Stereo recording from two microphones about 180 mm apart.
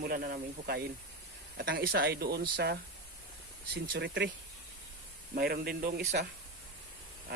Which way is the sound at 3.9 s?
75° right (ahead or behind).